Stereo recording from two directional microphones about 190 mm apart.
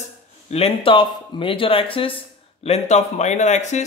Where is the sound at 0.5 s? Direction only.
30° left (ahead or behind).